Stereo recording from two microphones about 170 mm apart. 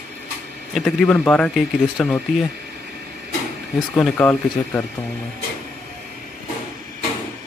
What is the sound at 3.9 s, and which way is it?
Speech, 15° left (ahead or behind).